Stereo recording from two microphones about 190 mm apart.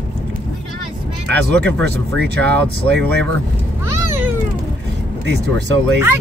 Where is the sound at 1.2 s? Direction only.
65° right (ahead or behind).